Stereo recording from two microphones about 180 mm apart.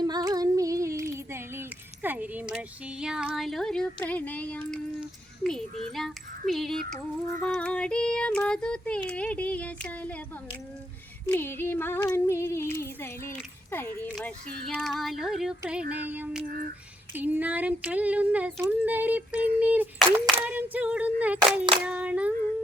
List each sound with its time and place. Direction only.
0.0 s female singing: 20° right (ahead or behind)
1.3 s speech: 10° right (ahead or behind); by 4.8 s 5° left (ahead or behind)
4.9 s a sound: 5° left (ahead or behind)
5.9 s music: centre (ahead or behind)
7.3 s female singing: 5° left (ahead or behind)
11.3 s female singing: 10° left (ahead or behind); by 22.3 s 5° right (ahead or behind)